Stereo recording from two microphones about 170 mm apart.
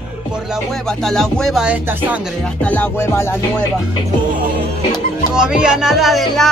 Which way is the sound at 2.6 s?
10° left (ahead or behind).